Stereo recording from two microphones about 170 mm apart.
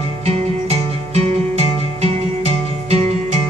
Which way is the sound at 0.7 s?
40° right (ahead or behind).